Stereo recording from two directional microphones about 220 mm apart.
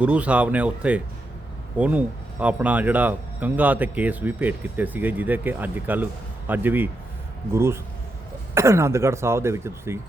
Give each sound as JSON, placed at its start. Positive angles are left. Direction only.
{"t": 0.0, "sound": "speech", "side_deg": -5}